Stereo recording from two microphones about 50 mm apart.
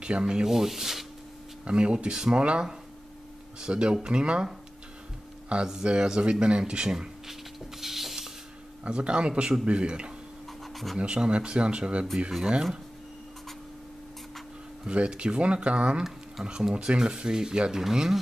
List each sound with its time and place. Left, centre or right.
0.0 s speech: centre
1.6 s speech: right
3.6 s speech: centre
5.5 s speech: centre
7.8 s a sound: centre
8.8 s speech: right
10.6 s a sound: centre
11.0 s speech: right
14.9 s speech: right